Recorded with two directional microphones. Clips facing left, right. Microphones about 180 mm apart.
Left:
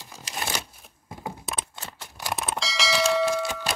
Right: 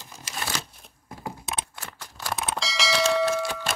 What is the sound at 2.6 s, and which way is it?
Bell, centre (ahead or behind).